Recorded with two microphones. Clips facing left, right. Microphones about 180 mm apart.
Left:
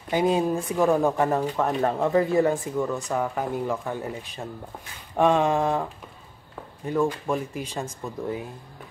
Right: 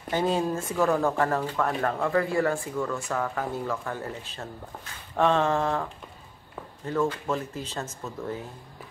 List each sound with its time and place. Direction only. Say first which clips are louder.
0.1 s speech: left 3 dB; 15° left (ahead or behind)